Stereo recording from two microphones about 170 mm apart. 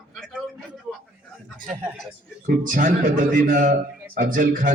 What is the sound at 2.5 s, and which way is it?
A man's voice, 50° right (ahead or behind).